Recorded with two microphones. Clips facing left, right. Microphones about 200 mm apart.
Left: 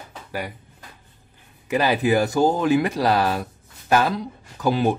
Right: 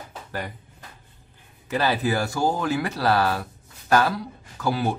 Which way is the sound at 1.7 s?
15° left (ahead or behind).